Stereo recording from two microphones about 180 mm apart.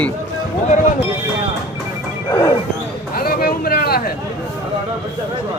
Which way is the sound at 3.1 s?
55° left (ahead or behind).